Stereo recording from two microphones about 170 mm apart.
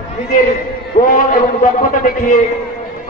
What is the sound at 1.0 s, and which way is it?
Speech, 50° left (ahead or behind).